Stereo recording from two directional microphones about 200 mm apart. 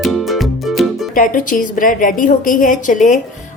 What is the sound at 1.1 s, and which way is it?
A woman's voice, 40° left (ahead or behind).